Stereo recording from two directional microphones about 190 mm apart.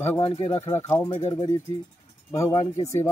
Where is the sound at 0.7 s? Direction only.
15° left (ahead or behind).